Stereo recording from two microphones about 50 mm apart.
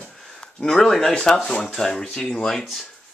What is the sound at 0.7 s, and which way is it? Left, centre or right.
Speech, centre.